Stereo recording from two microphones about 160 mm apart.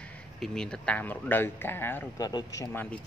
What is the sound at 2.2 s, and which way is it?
Speech, 25° left (ahead or behind).